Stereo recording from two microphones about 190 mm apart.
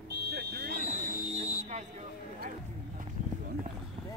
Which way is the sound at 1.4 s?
35° right (ahead or behind).